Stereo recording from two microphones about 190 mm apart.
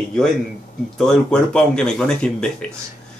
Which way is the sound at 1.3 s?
5° left (ahead or behind).